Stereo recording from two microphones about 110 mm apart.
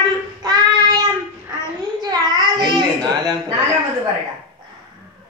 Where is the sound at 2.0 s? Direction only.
40° right (ahead or behind).